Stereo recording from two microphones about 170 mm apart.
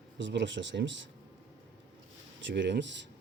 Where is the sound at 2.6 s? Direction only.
90° right.